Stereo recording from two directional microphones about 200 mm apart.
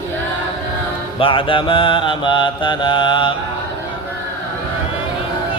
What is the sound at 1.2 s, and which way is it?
Mantra, 25° left (ahead or behind).